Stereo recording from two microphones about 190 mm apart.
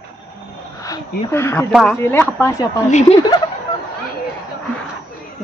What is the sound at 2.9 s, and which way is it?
Speech, 35° left (ahead or behind).